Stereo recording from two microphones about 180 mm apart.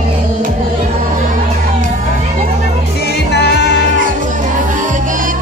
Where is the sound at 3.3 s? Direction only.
70° left (ahead or behind).